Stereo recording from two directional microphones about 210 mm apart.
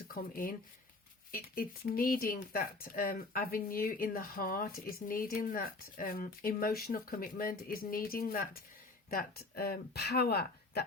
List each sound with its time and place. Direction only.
0.1 s speech: 40° left (ahead or behind)